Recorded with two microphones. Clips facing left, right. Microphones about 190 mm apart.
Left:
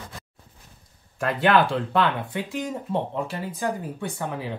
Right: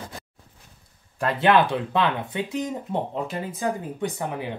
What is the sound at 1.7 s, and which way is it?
Speech, 20° right (ahead or behind).